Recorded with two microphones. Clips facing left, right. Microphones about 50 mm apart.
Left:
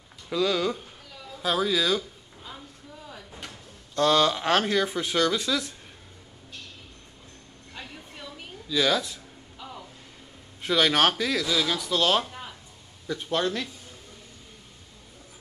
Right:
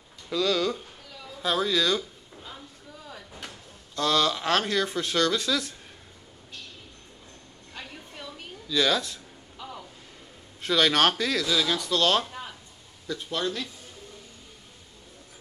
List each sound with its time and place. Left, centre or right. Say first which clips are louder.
0.3 s speech: even; centre
1.4 s a sound: even; centre
4.0 s speech: left 3 dB; left; by 5.8 s centre
7.7 s a sound: even; centre
10.6 s speech: even; centre
13.3 s speech: left 4 dB; left